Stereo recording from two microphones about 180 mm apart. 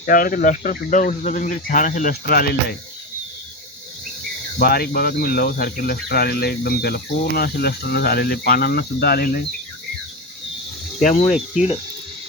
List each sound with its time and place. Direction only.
0.0 s speech: 50° left (ahead or behind)
4.5 s speech: 60° left (ahead or behind)
11.0 s speech: 45° left (ahead or behind)